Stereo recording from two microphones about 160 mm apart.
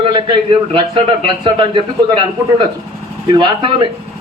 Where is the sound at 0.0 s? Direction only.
30° right (ahead or behind).